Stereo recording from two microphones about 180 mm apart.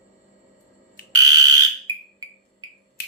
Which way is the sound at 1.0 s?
55° left (ahead or behind).